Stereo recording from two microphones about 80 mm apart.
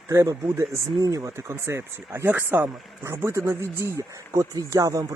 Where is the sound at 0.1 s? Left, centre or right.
Right.